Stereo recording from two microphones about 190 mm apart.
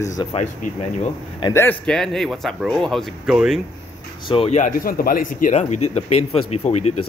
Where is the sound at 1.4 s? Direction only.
15° left (ahead or behind); by 3.6 s centre (ahead or behind).